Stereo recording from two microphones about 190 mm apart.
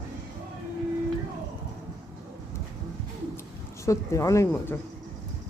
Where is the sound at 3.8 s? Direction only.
15° left (ahead or behind).